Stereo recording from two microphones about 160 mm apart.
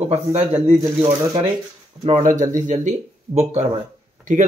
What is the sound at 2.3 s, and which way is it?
A man's voice, 50° right (ahead or behind).